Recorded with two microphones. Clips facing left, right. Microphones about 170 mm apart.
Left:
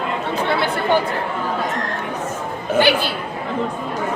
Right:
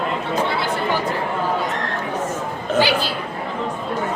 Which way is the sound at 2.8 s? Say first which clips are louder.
Left 2 dB; 55° left (ahead or behind).